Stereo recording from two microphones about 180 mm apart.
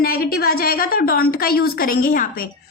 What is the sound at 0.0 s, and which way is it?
A woman's voice, 55° left (ahead or behind).